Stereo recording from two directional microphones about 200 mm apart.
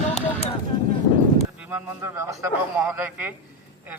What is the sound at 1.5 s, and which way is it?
A man's voice, 10° right (ahead or behind).